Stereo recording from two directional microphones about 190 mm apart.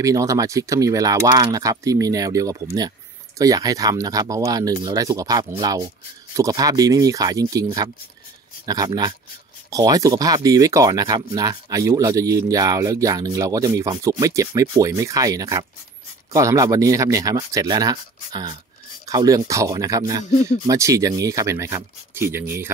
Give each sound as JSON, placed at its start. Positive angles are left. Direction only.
{"t": 0.0, "sound": "speech", "side_deg": -15}
{"t": 8.6, "sound": "speech", "side_deg": -20}